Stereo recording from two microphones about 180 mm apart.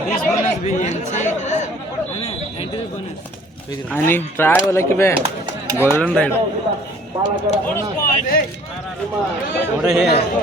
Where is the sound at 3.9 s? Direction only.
10° left (ahead or behind).